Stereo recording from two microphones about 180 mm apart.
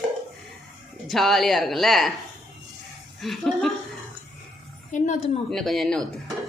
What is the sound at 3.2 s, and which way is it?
Speech, centre (ahead or behind).